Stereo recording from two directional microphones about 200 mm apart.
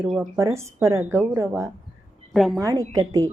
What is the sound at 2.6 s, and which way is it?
Speech, 15° right (ahead or behind).